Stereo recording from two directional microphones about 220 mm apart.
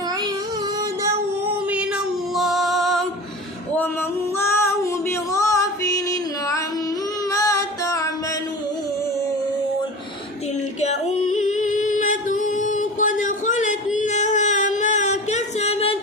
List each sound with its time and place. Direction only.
0.8 s music: 15° right (ahead or behind)
1.7 s female singing: 5° right (ahead or behind)
4.4 s female singing: 10° left (ahead or behind)
7.3 s music: 15° left (ahead or behind)
10.8 s yodeling: 30° left (ahead or behind)